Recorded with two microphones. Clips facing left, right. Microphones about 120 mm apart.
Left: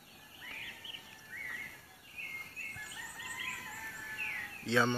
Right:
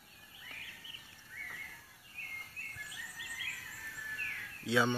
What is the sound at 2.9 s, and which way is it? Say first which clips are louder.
Bird vocalization: left 2 dB; 60° left (ahead or behind).